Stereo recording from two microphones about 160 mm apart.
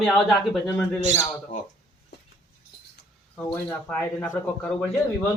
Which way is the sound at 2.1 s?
90° left.